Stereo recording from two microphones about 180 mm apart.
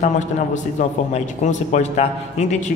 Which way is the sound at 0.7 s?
40° left (ahead or behind).